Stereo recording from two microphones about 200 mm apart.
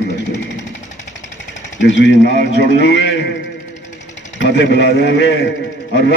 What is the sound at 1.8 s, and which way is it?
A man's voice, 60° left (ahead or behind).